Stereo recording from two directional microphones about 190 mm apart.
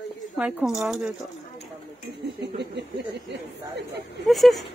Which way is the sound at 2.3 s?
60° right (ahead or behind).